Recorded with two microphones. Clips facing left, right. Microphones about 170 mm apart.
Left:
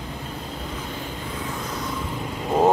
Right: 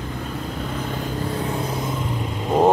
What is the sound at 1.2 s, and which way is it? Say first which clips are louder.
Vehicle: right 5 dB; 35° right (ahead or behind).